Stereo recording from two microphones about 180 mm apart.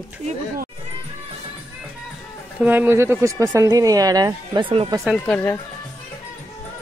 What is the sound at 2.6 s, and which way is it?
Speech, 10° right (ahead or behind).